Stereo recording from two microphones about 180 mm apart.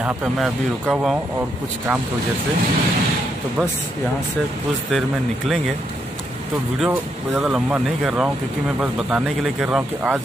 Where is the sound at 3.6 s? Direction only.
15° right (ahead or behind).